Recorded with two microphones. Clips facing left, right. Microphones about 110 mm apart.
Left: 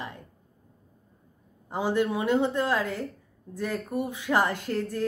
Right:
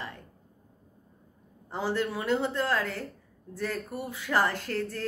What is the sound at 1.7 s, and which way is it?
A woman's voice, 15° left (ahead or behind).